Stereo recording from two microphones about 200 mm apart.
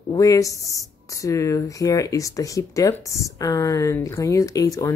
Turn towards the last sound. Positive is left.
turn(degrees=15)  # may be behind; listen again after turning